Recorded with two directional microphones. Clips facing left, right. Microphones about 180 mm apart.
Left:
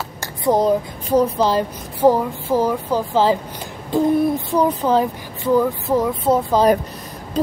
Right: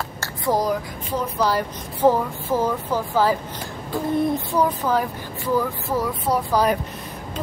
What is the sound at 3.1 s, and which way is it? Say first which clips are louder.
Speech: left 3 dB; 25° left (ahead or behind).